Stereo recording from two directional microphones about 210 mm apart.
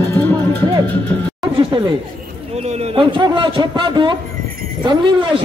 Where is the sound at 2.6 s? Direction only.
30° right (ahead or behind).